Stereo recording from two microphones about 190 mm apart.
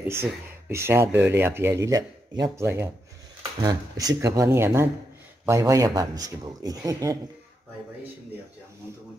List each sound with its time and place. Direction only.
0.1 s speech: 15° right (ahead or behind)